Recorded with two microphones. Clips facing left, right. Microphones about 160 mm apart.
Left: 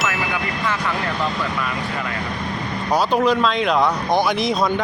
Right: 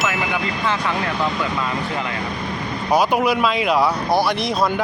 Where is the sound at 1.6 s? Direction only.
20° right (ahead or behind).